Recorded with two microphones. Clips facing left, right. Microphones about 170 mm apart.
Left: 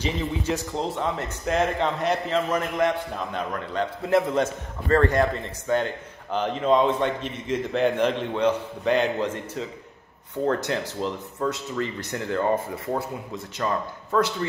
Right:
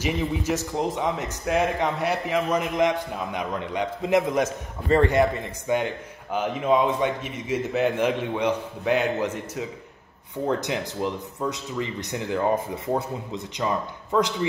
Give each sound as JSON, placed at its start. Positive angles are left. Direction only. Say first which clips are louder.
{"t": 0.7, "sound": "a man's voice", "louder": "right 1 dB", "side_deg": -15}
{"t": 10.4, "sound": "a man's voice", "louder": "left 1 dB", "side_deg": -15}